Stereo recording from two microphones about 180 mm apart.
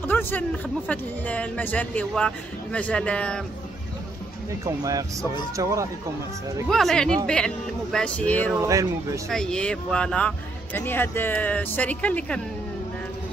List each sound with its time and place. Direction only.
0.0 s speech: 10° left (ahead or behind)
4.5 s speech: 15° right (ahead or behind)
6.7 s speech: centre (ahead or behind)
8.5 s speech: 15° right (ahead or behind)
9.3 s speech: 5° left (ahead or behind)